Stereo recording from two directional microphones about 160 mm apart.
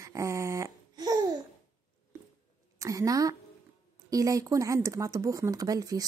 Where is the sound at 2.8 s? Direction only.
20° right (ahead or behind).